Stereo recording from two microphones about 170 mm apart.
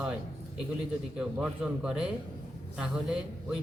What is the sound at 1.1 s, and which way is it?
A man's voice, 5° right (ahead or behind).